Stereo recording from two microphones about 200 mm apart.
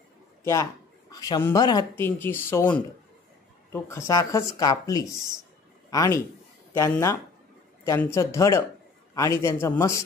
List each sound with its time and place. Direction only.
0.4 s a man's voice: 15° left (ahead or behind)